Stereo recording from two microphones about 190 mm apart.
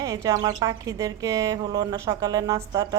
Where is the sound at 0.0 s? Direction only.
20° right (ahead or behind).